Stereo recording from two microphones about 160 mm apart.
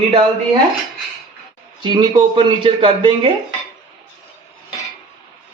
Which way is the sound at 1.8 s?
30° right (ahead or behind).